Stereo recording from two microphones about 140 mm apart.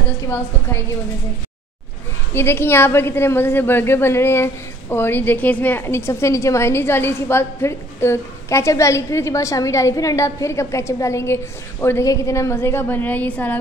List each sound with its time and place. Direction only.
2.3 s a woman's voice: 15° left (ahead or behind)